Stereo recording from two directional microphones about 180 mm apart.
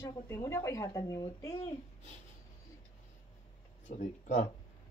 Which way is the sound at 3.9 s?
40° left (ahead or behind).